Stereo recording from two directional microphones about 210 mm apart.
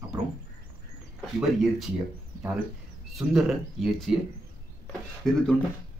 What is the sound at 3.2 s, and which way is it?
Speech, centre (ahead or behind).